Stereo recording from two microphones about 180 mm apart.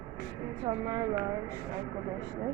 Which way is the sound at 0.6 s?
25° right (ahead or behind).